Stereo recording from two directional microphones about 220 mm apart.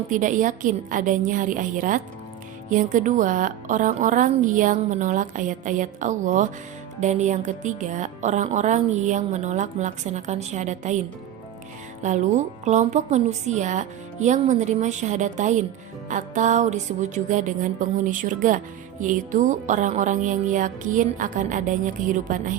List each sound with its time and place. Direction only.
0.1 s speech: 35° right (ahead or behind)
12.0 s speech: 35° right (ahead or behind)